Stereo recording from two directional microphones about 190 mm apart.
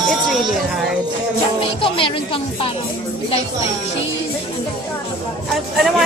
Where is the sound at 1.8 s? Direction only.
25° left (ahead or behind).